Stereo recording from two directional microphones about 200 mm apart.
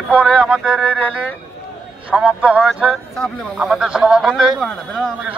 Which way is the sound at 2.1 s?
5° right (ahead or behind).